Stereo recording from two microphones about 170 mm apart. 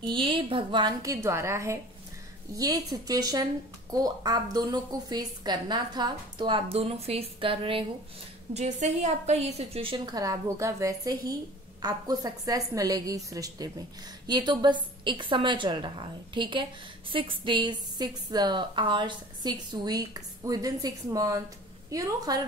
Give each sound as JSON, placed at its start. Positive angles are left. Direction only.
{"t": 0.0, "sound": "a woman's voice", "side_deg": -30}
{"t": 8.5, "sound": "a woman's voice", "side_deg": -40}